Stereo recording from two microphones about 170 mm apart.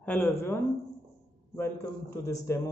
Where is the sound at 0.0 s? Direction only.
10° left (ahead or behind).